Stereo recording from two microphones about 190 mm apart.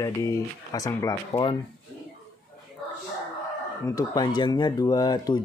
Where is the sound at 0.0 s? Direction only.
20° left (ahead or behind).